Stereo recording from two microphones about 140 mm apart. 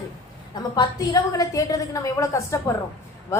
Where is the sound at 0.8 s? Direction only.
25° left (ahead or behind).